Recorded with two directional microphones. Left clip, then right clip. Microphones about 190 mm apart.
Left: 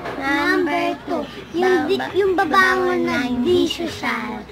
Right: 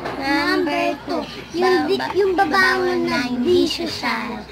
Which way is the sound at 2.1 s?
20° left (ahead or behind).